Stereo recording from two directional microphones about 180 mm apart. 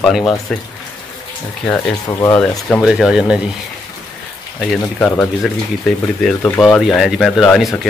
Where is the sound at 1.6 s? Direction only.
15° left (ahead or behind).